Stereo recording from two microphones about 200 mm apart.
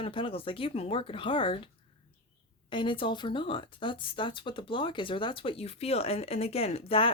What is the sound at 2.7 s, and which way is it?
Speech, 25° left (ahead or behind).